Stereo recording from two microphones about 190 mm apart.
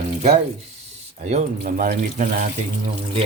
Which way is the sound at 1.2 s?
40° right (ahead or behind).